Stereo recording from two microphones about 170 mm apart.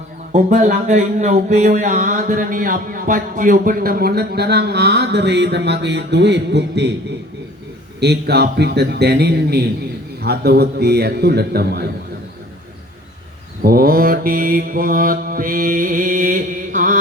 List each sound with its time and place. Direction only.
0.3 s speech: 45° right (ahead or behind); by 6.9 s 90° right
7.9 s a man's voice: 80° right
13.6 s mantra: 60° right (ahead or behind)